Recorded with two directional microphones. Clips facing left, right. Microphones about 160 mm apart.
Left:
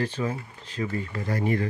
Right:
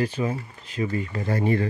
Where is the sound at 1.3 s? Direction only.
30° right (ahead or behind).